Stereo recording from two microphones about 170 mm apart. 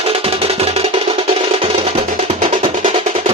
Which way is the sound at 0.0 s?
35° right (ahead or behind).